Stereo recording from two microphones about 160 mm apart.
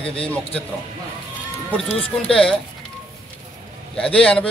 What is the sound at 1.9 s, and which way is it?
Speech, 35° left (ahead or behind).